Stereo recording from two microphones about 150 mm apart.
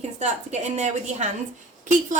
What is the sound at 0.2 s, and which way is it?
Speech, 50° right (ahead or behind).